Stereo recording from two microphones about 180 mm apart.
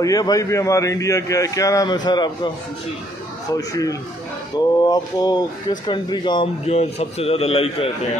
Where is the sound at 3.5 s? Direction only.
20° left (ahead or behind).